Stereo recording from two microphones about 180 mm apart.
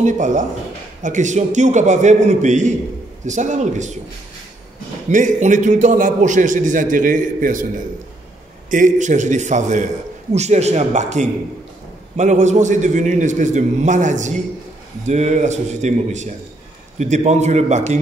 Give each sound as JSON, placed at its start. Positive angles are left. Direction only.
{"t": 0.0, "sound": "a man's voice", "side_deg": -45}
{"t": 5.1, "sound": "a man's voice", "side_deg": -45}
{"t": 8.6, "sound": "a man's voice", "side_deg": -45}